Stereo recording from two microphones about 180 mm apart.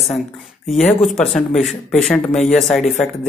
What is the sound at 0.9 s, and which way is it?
Speech, centre (ahead or behind).